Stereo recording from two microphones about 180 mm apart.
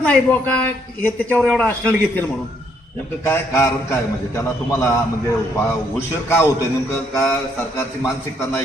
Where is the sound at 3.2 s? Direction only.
15° left (ahead or behind).